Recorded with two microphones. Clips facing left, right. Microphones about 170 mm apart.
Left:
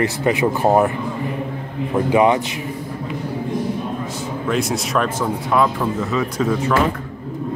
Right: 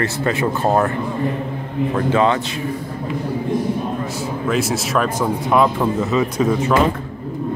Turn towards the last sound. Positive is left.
turn(degrees=-20)  # may be behind; listen again after turning